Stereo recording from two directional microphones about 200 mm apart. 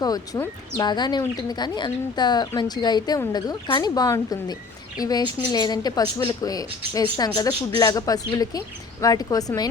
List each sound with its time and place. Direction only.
0.0 s a woman's voice: 20° left (ahead or behind)